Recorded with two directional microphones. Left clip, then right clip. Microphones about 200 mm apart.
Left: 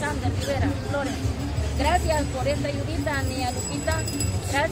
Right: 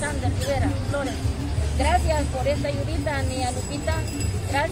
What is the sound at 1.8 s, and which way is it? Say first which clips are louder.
Speech: even; 10° left (ahead or behind).